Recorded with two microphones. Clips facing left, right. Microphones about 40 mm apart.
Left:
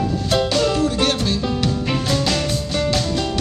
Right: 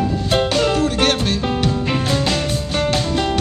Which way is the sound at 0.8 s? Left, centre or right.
Right.